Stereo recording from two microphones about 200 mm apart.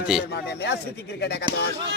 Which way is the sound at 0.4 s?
55° left (ahead or behind).